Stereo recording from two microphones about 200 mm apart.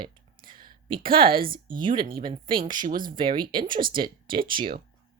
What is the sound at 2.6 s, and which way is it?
Speech, 40° right (ahead or behind).